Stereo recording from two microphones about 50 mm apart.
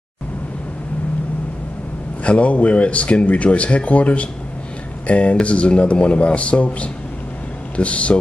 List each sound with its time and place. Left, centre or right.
2.2 s speech: left